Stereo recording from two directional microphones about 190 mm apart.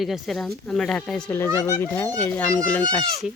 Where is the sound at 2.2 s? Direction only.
10° left (ahead or behind).